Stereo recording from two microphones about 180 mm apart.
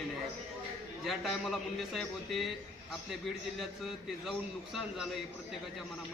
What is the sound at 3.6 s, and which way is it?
Speech, centre (ahead or behind).